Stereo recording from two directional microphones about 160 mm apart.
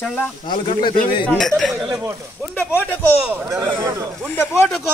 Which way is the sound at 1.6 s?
Centre (ahead or behind).